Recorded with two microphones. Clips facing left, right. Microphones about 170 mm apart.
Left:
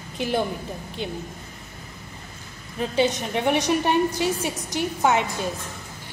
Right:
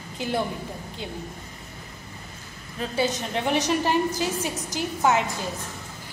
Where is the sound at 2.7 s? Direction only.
15° left (ahead or behind).